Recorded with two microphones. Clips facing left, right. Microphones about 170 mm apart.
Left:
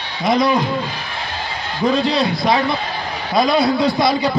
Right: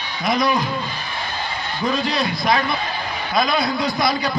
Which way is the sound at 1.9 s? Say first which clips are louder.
Left 5 dB; 30° left (ahead or behind).